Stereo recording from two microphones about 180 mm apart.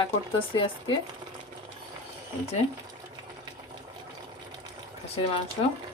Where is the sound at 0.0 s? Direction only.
30° left (ahead or behind).